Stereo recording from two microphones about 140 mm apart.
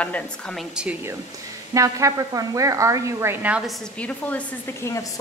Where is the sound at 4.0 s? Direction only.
10° left (ahead or behind).